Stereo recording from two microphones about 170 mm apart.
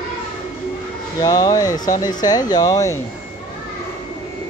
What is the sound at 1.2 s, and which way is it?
Speech, 20° left (ahead or behind).